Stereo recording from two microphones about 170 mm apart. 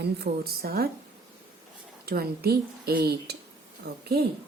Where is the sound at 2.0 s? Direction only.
65° right (ahead or behind).